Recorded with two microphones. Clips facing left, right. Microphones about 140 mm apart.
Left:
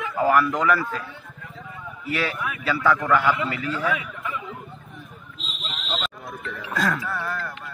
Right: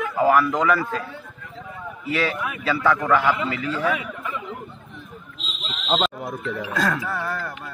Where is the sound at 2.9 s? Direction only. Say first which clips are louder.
Right 1 dB; 10° right (ahead or behind).